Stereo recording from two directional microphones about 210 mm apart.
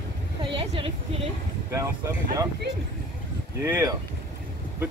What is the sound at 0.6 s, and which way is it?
Speech, 25° right (ahead or behind).